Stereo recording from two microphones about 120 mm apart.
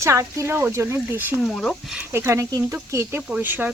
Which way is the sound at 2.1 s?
25° right (ahead or behind).